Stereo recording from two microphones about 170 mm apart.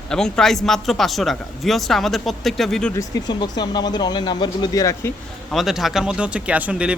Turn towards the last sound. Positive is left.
turn(degrees=-5)  # may be behind; listen again after turning